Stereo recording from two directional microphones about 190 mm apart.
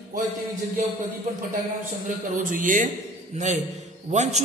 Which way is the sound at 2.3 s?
45° right (ahead or behind).